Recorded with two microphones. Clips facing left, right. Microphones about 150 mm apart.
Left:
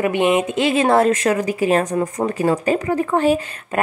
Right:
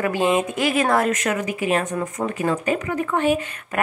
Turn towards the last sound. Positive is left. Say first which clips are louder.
# left 3 dB
turn(degrees=35)  # may be behind; listen again after turning